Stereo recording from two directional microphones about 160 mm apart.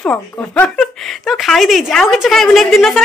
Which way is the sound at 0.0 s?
10° left (ahead or behind).